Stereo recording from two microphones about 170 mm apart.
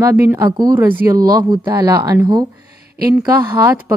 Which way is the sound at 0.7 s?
10° right (ahead or behind).